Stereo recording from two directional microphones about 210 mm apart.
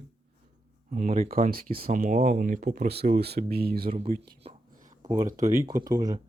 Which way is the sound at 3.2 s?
50° right (ahead or behind).